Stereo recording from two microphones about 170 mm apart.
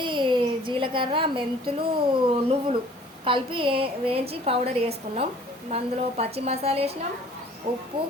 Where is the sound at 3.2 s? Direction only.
30° right (ahead or behind).